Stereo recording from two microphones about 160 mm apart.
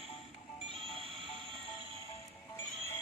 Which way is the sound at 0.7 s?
35° right (ahead or behind).